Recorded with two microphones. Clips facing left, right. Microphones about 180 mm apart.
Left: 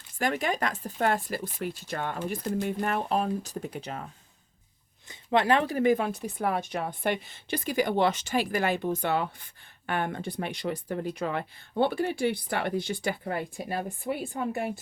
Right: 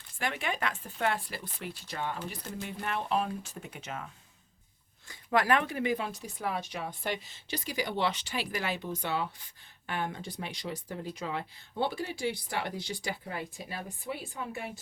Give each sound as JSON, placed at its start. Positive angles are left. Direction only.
{"t": 0.2, "sound": "speech", "side_deg": 40}